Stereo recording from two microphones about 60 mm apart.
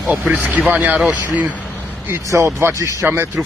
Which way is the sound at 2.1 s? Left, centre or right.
Right.